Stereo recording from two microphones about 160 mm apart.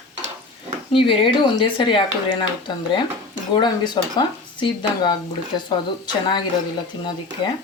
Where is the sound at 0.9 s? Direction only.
30° left (ahead or behind).